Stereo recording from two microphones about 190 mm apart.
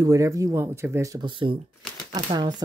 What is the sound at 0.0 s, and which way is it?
Speech, 15° right (ahead or behind).